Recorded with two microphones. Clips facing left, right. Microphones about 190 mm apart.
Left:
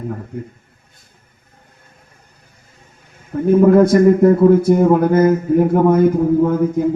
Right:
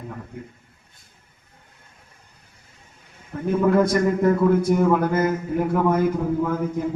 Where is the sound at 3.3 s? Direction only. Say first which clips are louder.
Left 8 dB; 40° left (ahead or behind).